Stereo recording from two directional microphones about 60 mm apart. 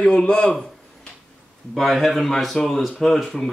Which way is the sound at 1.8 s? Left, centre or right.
Centre.